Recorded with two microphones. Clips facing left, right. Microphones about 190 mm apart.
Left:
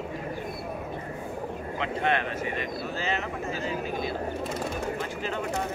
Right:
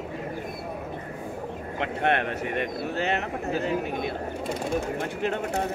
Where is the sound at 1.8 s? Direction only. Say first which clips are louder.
Right 2 dB; 60° right (ahead or behind).